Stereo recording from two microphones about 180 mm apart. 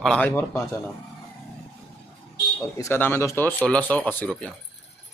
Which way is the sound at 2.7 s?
15° left (ahead or behind).